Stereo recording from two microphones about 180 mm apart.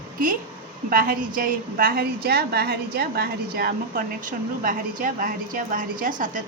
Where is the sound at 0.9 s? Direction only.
55° right (ahead or behind).